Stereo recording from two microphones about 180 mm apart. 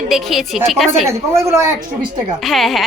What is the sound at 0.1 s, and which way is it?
Speech, centre (ahead or behind).